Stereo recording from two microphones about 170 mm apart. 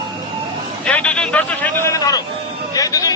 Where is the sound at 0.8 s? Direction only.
5° left (ahead or behind).